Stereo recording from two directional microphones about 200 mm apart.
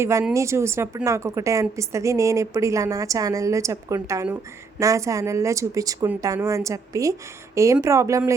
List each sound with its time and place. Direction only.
0.0 s a woman's voice: 15° right (ahead or behind)